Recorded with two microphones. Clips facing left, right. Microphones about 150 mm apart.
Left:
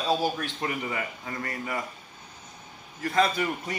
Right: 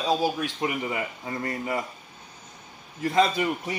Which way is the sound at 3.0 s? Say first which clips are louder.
Right 2 dB; 25° right (ahead or behind).